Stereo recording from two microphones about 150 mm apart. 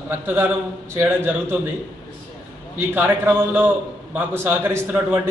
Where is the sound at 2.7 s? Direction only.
15° right (ahead or behind).